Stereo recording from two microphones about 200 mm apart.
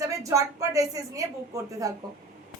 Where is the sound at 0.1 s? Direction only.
15° right (ahead or behind).